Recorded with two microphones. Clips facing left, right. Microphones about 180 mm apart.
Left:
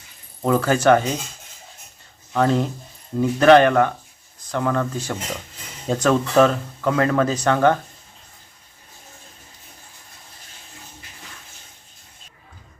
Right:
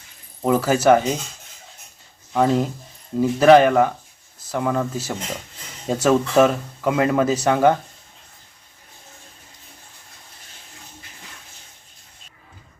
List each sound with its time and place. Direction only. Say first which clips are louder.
0.4 s speech: right 1 dB; 10° right (ahead or behind)
2.3 s speech: right 1 dB; 10° right (ahead or behind)